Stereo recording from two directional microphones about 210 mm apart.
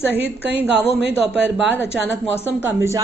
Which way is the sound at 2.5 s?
10° right (ahead or behind).